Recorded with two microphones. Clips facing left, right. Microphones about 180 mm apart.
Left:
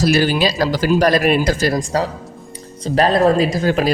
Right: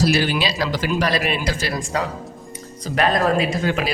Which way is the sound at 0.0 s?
45° left (ahead or behind).